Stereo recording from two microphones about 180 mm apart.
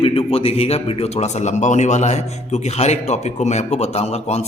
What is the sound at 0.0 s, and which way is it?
A man's voice, 30° left (ahead or behind).